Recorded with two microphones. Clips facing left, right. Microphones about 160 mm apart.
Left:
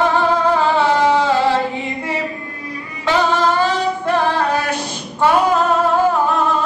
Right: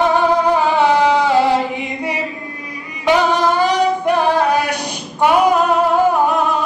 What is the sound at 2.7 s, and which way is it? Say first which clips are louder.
Music: right 4 dB; 15° right (ahead or behind).